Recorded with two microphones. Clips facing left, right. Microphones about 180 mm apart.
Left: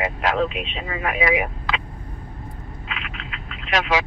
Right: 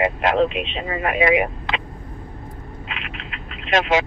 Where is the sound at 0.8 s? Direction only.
40° right (ahead or behind).